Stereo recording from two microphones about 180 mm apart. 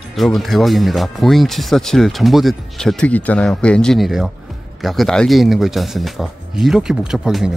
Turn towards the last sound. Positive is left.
turn(degrees=0)  # may be behind; listen again after turning